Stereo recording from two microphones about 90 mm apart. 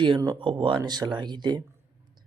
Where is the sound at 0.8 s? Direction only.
50° right (ahead or behind).